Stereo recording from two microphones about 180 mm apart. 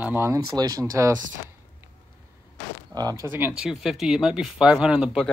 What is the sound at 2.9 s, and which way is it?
Speech, 20° right (ahead or behind).